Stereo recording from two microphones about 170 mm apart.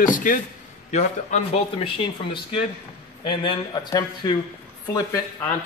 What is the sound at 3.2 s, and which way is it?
A man's voice, 25° left (ahead or behind).